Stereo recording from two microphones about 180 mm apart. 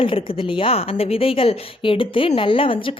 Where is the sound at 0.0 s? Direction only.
30° left (ahead or behind).